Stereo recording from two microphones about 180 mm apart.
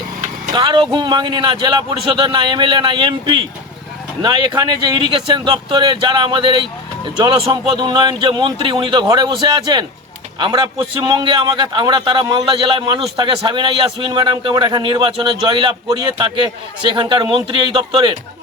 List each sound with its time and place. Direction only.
0.5 s a man's voice: 25° right (ahead or behind)